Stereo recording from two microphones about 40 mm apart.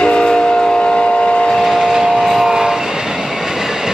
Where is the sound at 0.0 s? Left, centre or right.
Left.